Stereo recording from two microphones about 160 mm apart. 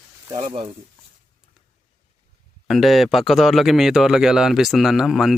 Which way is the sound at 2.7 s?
Centre (ahead or behind).